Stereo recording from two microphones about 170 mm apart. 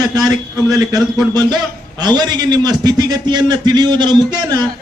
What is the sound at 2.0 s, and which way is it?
A man's voice, 25° right (ahead or behind).